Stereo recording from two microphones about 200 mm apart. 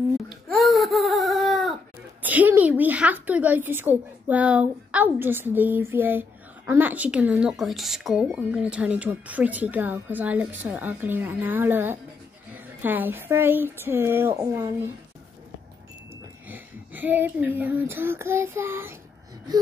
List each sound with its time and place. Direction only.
0.5 s a sound: centre (ahead or behind)
2.2 s a woman's voice: 10° right (ahead or behind)
16.4 s speech: 10° right (ahead or behind)